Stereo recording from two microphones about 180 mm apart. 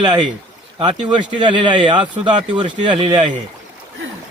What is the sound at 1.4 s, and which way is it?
Speech, 25° right (ahead or behind).